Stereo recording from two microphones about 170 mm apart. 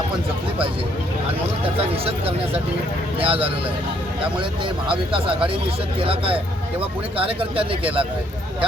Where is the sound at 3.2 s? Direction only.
30° right (ahead or behind).